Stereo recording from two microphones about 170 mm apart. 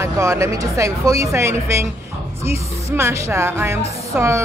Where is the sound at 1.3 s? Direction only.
15° right (ahead or behind).